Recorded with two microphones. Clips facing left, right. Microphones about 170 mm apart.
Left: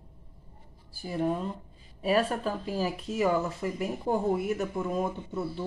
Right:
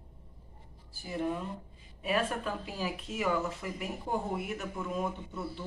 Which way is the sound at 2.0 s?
35° left (ahead or behind).